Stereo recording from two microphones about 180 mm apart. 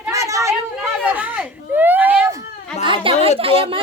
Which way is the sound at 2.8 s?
30° right (ahead or behind).